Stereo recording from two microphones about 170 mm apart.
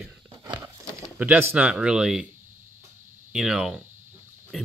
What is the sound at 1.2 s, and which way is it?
Speech, 10° right (ahead or behind).